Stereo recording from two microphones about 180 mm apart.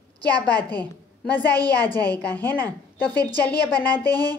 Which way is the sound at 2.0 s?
10° left (ahead or behind).